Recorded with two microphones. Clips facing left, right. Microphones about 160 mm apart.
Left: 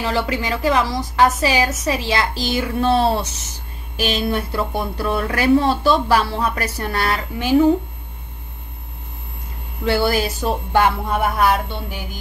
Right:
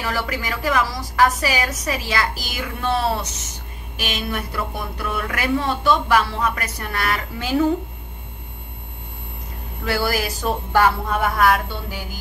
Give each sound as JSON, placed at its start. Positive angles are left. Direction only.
{"t": 0.0, "sound": "a woman's voice", "side_deg": 25}
{"t": 7.3, "sound": "a woman's voice", "side_deg": 20}
{"t": 9.8, "sound": "a woman's voice", "side_deg": 25}